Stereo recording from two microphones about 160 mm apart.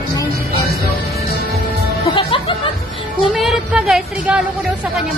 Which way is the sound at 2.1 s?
30° left (ahead or behind).